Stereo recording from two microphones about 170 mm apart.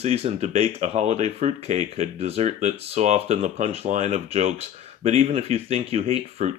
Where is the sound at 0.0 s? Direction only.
35° right (ahead or behind).